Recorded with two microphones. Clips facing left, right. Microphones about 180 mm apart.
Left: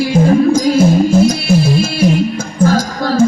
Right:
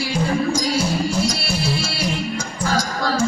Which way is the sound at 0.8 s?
50° left (ahead or behind).